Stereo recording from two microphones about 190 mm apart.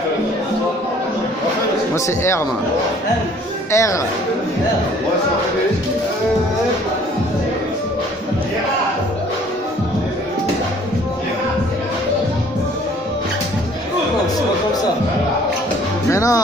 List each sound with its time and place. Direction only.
2.0 s a man's voice: 15° left (ahead or behind)
3.7 s a man's voice: 15° left (ahead or behind)
16.1 s music: 15° left (ahead or behind)